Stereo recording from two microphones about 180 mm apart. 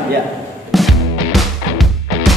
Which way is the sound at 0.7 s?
Centre (ahead or behind).